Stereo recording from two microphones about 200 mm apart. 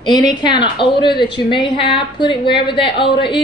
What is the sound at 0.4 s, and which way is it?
A woman's voice, 25° left (ahead or behind).